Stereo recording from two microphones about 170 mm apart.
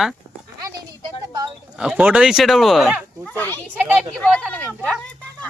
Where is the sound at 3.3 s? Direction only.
10° left (ahead or behind).